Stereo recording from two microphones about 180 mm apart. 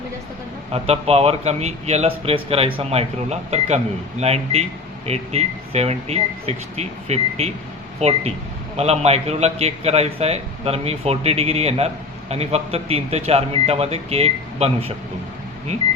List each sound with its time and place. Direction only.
0.7 s a man's voice: 35° right (ahead or behind)